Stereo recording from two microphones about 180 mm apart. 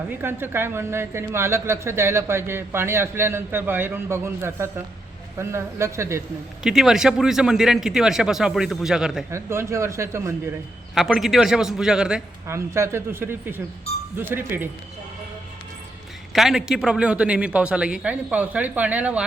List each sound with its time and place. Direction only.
0.1 s speech: 10° right (ahead or behind)
6.6 s speech: 5° right (ahead or behind)
9.3 s speech: 15° right (ahead or behind)
10.9 s speech: centre (ahead or behind)
12.5 s speech: 15° right (ahead or behind)
16.3 s speech: centre (ahead or behind)